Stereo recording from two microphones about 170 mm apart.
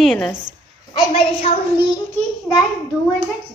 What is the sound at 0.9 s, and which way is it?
A child's voice, 30° left (ahead or behind).